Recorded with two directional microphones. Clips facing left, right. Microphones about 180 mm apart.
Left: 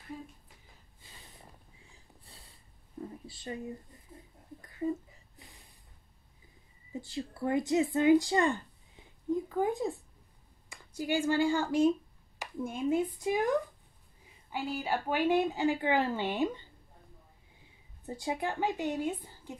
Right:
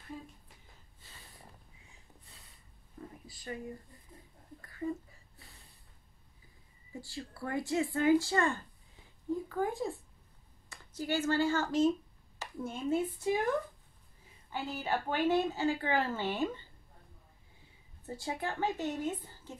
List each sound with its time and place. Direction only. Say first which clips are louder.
1.9 s sniff: left 2 dB; 35° left (ahead or behind)
3.3 s speech: left 2 dB; 25° left (ahead or behind)
4.6 s a sound: left 4 dB; 20° left (ahead or behind)
6.9 s speech: left 5 dB; 20° left (ahead or behind)
14.5 s a woman's voice: left 2 dB; 10° left (ahead or behind)
18.0 s a woman's voice: left 3 dB; 15° left (ahead or behind)